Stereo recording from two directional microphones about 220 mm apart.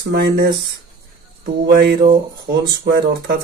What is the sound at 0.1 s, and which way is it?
Speech, 50° right (ahead or behind).